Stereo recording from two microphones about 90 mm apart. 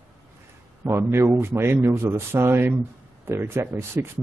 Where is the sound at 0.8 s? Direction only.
30° right (ahead or behind).